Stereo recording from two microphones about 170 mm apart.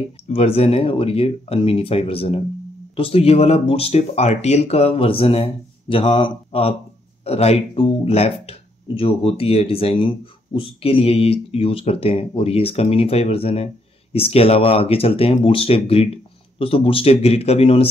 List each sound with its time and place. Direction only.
0.3 s speech: 35° left (ahead or behind)